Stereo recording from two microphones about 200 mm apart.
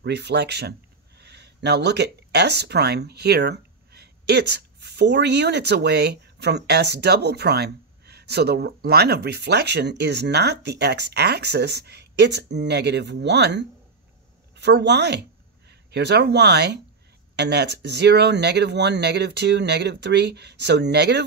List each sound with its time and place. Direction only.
0.0 s a woman's voice: 60° right (ahead or behind)